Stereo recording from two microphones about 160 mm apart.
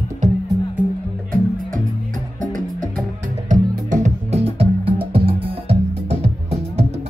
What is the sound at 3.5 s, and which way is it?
Music, 50° right (ahead or behind).